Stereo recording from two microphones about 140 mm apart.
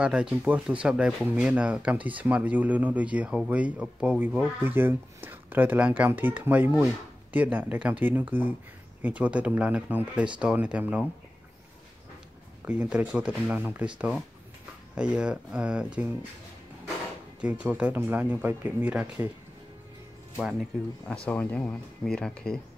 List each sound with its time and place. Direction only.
0.0 s speech: 5° right (ahead or behind)
12.6 s speech: 10° right (ahead or behind)
17.4 s speech: 10° right (ahead or behind)
20.3 s speech: centre (ahead or behind)
21.3 s speech: 10° left (ahead or behind)